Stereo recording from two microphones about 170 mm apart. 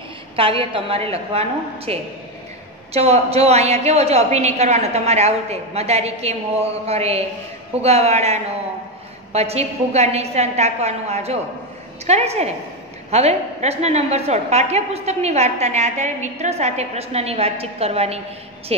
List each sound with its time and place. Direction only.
0.4 s a woman's voice: 30° right (ahead or behind)